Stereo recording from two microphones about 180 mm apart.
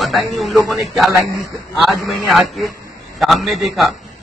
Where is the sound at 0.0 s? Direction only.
Centre (ahead or behind).